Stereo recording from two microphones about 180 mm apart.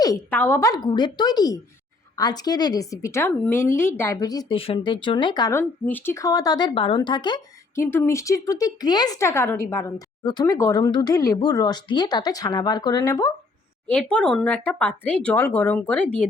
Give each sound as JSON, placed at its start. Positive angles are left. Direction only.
{"t": 0.0, "sound": "speech", "side_deg": 15}
{"t": 7.9, "sound": "speech", "side_deg": 15}
{"t": 13.9, "sound": "speech", "side_deg": 5}